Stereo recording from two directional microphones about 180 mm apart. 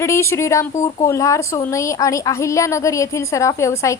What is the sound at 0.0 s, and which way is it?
A woman's voice, 15° left (ahead or behind).